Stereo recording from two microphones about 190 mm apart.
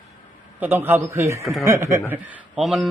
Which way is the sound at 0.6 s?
10° right (ahead or behind).